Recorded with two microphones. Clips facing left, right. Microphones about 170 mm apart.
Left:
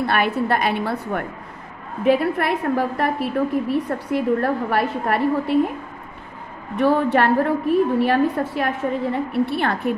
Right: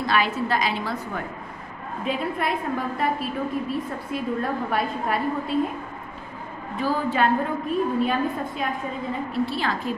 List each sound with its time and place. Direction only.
0.0 s a woman's voice: 60° left (ahead or behind)
6.8 s a woman's voice: 65° left (ahead or behind)